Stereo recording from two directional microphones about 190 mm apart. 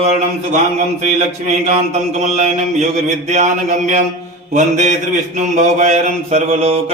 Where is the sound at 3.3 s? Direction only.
40° right (ahead or behind).